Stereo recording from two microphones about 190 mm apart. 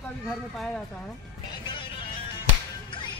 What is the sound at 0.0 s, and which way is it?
Speech, centre (ahead or behind).